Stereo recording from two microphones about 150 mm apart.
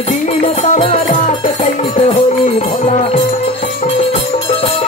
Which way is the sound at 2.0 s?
40° left (ahead or behind).